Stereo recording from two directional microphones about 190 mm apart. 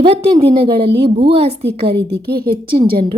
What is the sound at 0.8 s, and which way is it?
Speech, 60° right (ahead or behind).